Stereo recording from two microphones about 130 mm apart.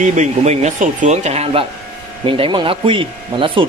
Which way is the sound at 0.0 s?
70° right (ahead or behind).